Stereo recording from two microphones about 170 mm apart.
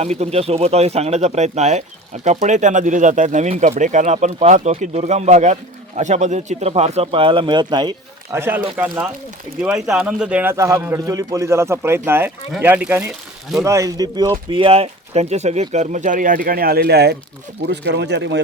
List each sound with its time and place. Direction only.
0.0 s speech: 40° right (ahead or behind); by 14.3 s 20° right (ahead or behind)
14.5 s speech: 35° right (ahead or behind); by 17.2 s 75° right (ahead or behind)
17.7 s speech: 90° right